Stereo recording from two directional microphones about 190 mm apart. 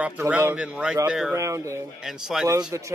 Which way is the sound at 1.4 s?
15° right (ahead or behind).